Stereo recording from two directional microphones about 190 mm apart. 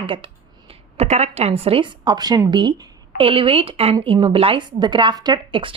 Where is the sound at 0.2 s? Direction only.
30° right (ahead or behind).